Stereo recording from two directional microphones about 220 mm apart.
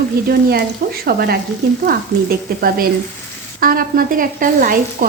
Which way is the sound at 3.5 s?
40° right (ahead or behind).